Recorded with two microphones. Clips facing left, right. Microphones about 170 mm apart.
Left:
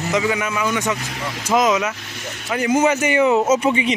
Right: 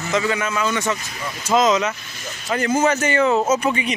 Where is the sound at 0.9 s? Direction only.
75° left (ahead or behind).